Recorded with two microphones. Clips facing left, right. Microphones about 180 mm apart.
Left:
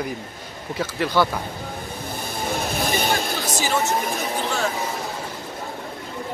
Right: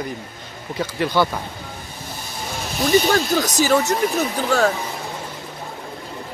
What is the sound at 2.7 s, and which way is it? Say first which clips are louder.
Speech: right 9 dB; 55° left (ahead or behind).